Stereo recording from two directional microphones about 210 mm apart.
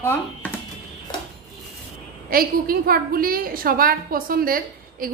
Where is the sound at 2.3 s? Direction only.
45° right (ahead or behind).